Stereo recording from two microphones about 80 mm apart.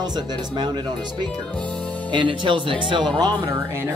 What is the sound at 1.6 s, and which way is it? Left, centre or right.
Speech, centre.